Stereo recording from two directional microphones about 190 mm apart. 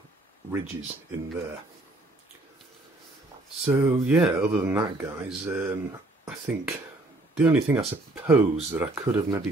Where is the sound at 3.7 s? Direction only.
10° right (ahead or behind).